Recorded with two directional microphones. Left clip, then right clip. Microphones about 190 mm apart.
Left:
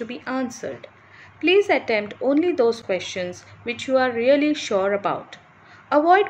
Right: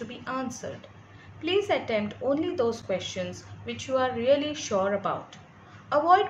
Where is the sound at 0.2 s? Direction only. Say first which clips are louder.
Left 4 dB; 35° left (ahead or behind).